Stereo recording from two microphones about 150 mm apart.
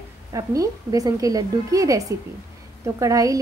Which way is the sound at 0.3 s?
20° right (ahead or behind).